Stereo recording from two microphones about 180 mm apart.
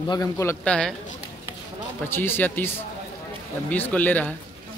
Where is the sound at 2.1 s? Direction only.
10° left (ahead or behind).